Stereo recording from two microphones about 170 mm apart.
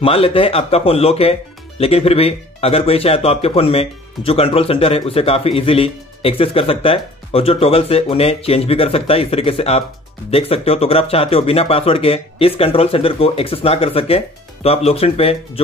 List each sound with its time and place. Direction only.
0.0 s speech: 35° left (ahead or behind)